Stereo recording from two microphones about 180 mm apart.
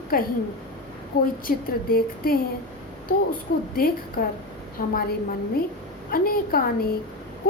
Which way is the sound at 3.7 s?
55° left (ahead or behind).